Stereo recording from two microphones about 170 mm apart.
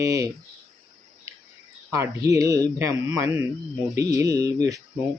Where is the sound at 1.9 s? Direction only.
20° right (ahead or behind).